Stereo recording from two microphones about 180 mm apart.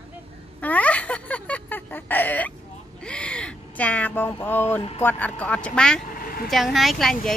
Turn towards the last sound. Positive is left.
turn(degrees=0)  # may be behind; listen again after turning